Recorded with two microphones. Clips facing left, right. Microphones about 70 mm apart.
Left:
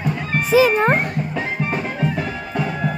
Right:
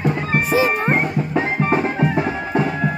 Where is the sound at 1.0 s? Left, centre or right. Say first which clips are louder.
Right 3 dB; right.